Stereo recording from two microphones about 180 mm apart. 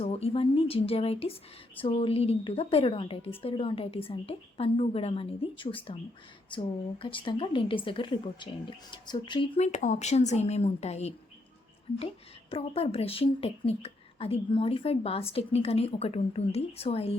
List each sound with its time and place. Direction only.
0.0 s a woman's voice: 35° left (ahead or behind)
9.6 s a woman's voice: 40° left (ahead or behind)
12.5 s a woman's voice: 30° left (ahead or behind)